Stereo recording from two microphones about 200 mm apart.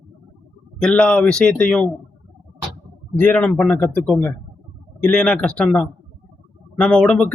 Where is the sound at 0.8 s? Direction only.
5° left (ahead or behind).